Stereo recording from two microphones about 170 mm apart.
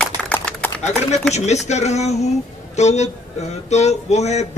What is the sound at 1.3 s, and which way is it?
A man's voice, 40° left (ahead or behind).